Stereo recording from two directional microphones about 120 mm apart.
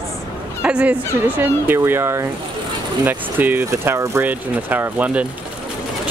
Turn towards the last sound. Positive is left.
turn(degrees=-10)  # may be behind; listen again after turning